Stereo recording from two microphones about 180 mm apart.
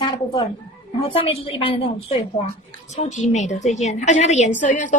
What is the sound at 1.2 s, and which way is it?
A woman's voice, 30° left (ahead or behind).